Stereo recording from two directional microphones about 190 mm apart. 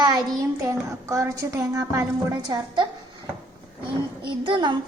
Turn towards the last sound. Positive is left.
turn(degrees=-25)  # may be behind; listen again after turning